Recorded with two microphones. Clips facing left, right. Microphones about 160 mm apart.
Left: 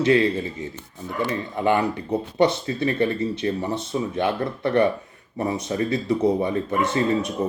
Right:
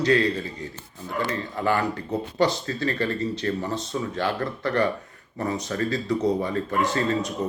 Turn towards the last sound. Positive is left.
turn(degrees=20)  # may be behind; listen again after turning